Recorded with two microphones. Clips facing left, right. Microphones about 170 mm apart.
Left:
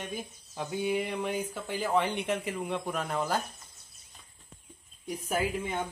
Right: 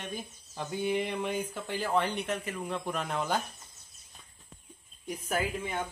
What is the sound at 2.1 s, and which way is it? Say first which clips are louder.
Speech: left 2 dB; 20° left (ahead or behind).